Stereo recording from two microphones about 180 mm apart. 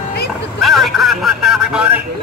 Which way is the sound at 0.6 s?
Centre (ahead or behind).